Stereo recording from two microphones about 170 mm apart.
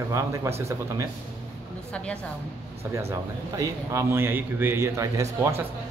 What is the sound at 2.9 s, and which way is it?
A man's voice, 15° right (ahead or behind).